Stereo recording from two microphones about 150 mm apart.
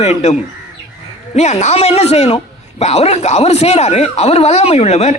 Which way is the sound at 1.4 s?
50° left (ahead or behind).